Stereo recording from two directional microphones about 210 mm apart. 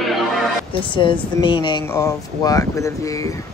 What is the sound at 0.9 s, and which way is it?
Speech, 25° left (ahead or behind).